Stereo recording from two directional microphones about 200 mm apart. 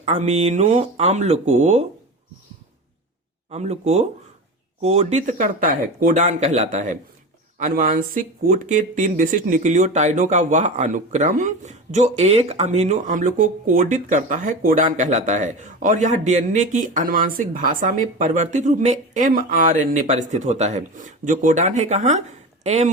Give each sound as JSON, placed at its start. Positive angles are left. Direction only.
{"t": 0.0, "sound": "speech", "side_deg": -35}
{"t": 3.5, "sound": "speech", "side_deg": -35}